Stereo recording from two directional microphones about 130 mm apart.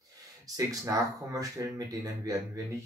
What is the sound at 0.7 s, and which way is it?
Speech, 25° right (ahead or behind).